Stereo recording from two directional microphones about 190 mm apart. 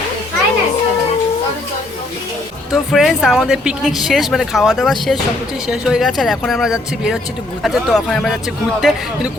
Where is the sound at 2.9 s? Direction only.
Centre (ahead or behind).